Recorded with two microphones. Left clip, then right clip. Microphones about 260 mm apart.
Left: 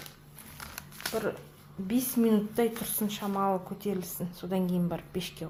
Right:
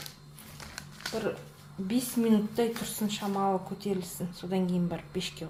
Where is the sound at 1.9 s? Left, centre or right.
Left.